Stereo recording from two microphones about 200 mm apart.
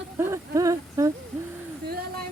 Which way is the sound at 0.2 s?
15° right (ahead or behind).